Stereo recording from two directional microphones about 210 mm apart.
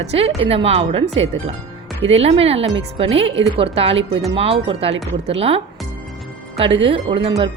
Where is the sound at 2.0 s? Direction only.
30° right (ahead or behind).